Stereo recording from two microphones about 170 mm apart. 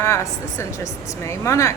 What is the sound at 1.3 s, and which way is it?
Speech, 15° left (ahead or behind).